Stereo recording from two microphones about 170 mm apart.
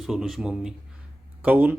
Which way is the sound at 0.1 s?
5° right (ahead or behind).